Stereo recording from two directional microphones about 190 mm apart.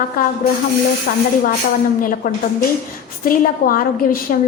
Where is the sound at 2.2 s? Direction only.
50° left (ahead or behind).